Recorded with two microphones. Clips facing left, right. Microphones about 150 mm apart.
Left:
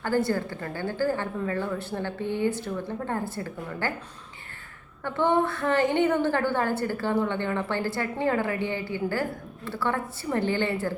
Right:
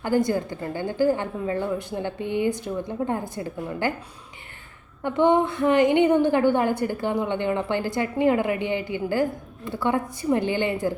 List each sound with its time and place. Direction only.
0.0 s a woman's voice: 15° right (ahead or behind)
5.0 s a woman's voice: 15° right (ahead or behind)